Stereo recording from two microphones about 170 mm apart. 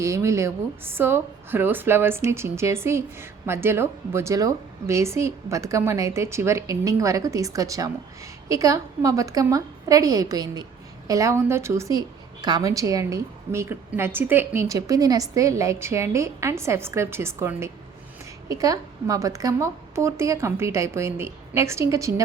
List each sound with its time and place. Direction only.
0.0 s a woman's voice: 15° right (ahead or behind)